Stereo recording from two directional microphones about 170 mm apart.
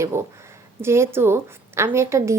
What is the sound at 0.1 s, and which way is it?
A woman's voice, 15° right (ahead or behind).